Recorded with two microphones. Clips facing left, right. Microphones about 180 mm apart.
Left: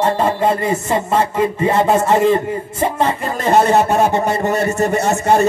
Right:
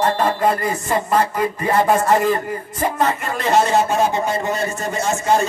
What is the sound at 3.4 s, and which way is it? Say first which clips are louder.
A man's voice: left 3 dB; 55° left (ahead or behind).